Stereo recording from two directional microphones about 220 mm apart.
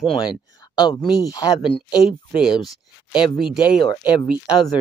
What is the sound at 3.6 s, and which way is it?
Speech, 20° left (ahead or behind).